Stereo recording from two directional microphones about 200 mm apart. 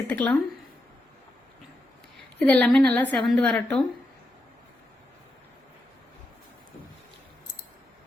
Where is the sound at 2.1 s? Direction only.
5° left (ahead or behind).